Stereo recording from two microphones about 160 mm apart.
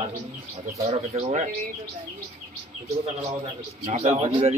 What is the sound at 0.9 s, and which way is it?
Speech, 40° right (ahead or behind).